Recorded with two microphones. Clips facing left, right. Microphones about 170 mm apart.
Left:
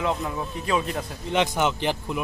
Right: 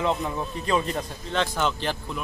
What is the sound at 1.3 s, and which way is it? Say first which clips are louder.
Speech: left 3 dB; 15° left (ahead or behind).